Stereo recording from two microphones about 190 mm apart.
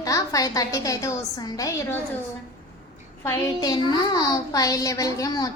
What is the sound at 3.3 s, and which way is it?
A child's voice, 20° left (ahead or behind).